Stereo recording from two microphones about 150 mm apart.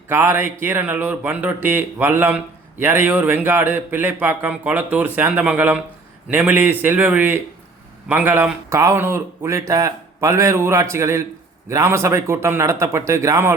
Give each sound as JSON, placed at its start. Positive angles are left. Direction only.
{"t": 0.1, "sound": "speech", "side_deg": -15}